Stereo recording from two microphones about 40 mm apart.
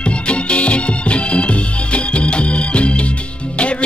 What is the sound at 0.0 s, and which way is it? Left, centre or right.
Music, left.